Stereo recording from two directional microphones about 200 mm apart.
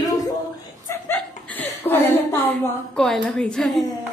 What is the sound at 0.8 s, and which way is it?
Chuckle, 10° left (ahead or behind).